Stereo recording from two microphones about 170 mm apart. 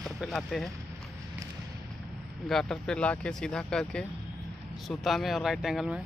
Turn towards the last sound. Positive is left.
turn(degrees=0)  # may be behind; listen again after turning